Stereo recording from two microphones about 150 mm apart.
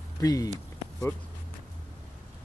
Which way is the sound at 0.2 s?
25° left (ahead or behind).